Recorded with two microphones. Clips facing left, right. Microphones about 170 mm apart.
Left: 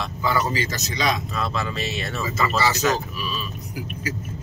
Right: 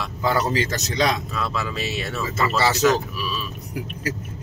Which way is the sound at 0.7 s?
65° right (ahead or behind).